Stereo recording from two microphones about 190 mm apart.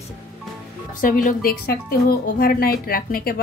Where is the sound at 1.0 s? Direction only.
45° left (ahead or behind).